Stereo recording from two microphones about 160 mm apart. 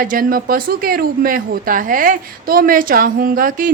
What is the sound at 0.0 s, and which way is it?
Speech, 60° right (ahead or behind).